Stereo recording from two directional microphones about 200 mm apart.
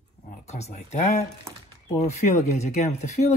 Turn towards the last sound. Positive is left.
turn(degrees=35)  # may be behind; listen again after turning